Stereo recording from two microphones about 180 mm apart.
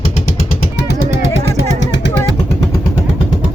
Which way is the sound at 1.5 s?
85° left.